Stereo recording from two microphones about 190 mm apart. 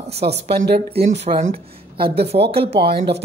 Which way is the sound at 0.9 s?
35° right (ahead or behind).